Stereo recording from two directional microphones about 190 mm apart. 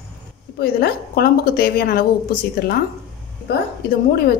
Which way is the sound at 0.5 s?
50° left (ahead or behind).